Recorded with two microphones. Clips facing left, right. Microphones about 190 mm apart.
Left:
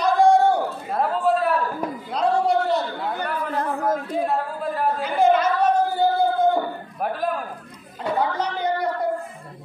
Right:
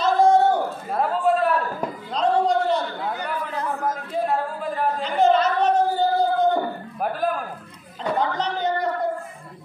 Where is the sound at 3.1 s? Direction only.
55° left (ahead or behind).